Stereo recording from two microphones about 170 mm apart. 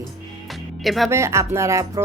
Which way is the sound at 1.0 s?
15° right (ahead or behind).